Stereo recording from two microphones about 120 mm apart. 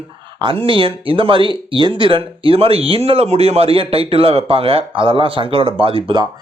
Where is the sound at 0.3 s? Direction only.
45° right (ahead or behind).